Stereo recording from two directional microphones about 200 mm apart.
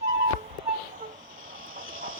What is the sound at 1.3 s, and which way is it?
Vehicle, 85° right.